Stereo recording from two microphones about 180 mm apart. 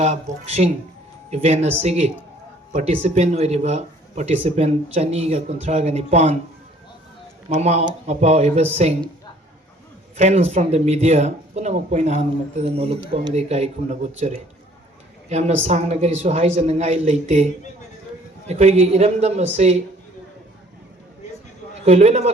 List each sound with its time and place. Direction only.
0.0 s speech: 40° right (ahead or behind)
7.5 s speech: 40° right (ahead or behind)
10.2 s speech: 40° right (ahead or behind)
21.8 s speech: 35° right (ahead or behind)